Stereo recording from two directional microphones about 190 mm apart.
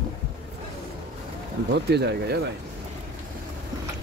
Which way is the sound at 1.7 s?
60° right (ahead or behind).